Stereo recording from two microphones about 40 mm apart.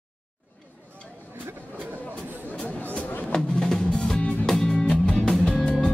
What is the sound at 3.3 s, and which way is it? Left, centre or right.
Music, centre.